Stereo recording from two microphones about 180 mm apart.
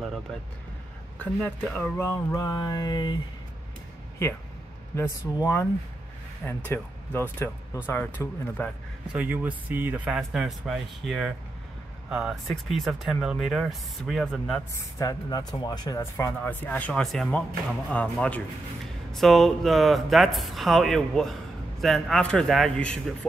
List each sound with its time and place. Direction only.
1.8 s speech: 15° left (ahead or behind)
4.9 s speech: 15° left (ahead or behind)
9.1 s speech: 10° right (ahead or behind)
14.8 s speech: 20° left (ahead or behind)